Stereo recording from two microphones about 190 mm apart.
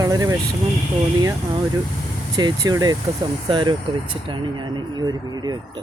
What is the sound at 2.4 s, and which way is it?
Speech, 20° right (ahead or behind).